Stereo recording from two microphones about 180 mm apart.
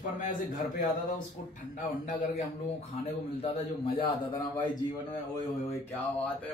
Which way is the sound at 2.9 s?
35° left (ahead or behind).